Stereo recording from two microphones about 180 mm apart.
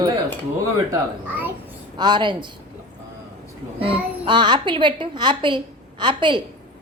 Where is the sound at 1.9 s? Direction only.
25° right (ahead or behind).